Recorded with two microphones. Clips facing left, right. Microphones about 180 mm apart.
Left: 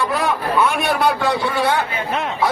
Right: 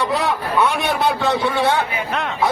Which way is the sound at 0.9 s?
20° right (ahead or behind).